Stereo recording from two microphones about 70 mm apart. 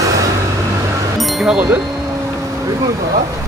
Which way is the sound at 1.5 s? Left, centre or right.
Centre.